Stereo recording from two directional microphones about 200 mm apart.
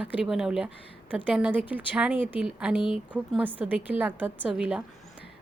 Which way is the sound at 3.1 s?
10° right (ahead or behind).